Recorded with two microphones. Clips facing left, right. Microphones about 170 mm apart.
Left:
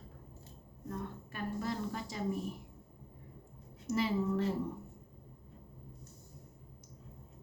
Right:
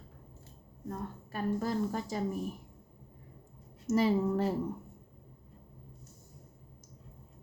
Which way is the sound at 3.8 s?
40° right (ahead or behind).